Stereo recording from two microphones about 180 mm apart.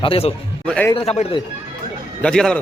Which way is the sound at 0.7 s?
10° left (ahead or behind).